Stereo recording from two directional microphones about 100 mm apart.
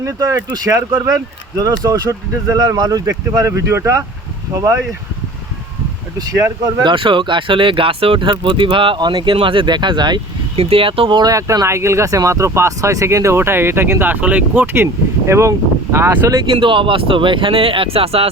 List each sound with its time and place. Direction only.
0.0 s speech: 35° right (ahead or behind)
6.8 s speech: 55° right (ahead or behind)
10.5 s speech: 70° right (ahead or behind)
11.2 s speech: 35° right (ahead or behind)
16.6 s speech: 60° right (ahead or behind); by 18.3 s 75° right (ahead or behind)